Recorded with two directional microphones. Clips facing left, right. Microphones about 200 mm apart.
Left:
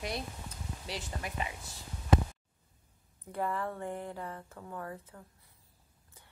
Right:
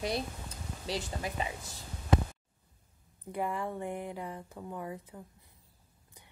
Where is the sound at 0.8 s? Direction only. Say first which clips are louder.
Right 5 dB; 30° right (ahead or behind).